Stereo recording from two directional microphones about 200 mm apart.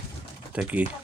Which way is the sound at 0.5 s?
5° right (ahead or behind).